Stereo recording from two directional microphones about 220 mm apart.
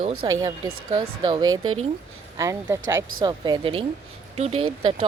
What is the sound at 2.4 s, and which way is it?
Speech, 15° right (ahead or behind).